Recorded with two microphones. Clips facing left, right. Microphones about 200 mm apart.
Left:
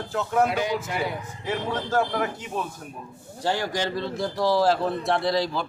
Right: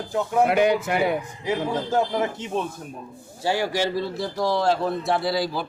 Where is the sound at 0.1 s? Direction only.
10° right (ahead or behind).